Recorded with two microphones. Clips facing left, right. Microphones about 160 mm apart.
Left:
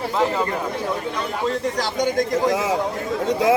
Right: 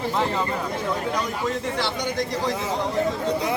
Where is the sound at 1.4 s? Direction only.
40° left (ahead or behind).